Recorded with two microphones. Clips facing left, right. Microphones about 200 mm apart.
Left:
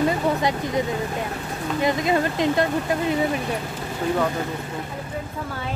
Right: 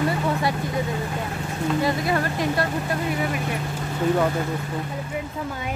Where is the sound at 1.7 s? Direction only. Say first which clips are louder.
Left 4 dB; 20° left (ahead or behind).